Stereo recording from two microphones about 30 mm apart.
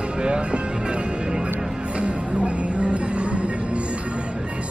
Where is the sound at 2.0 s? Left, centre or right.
Right.